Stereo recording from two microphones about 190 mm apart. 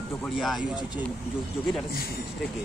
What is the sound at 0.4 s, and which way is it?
Speech, centre (ahead or behind).